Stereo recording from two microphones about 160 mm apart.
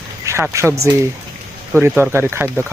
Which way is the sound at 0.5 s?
15° right (ahead or behind).